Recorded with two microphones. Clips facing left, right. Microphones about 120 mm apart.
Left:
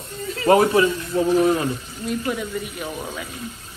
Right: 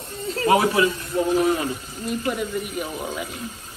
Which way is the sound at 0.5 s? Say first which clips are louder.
Left 3 dB; 40° left (ahead or behind).